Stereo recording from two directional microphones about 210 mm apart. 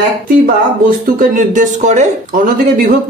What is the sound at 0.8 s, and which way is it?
Speech, 40° right (ahead or behind).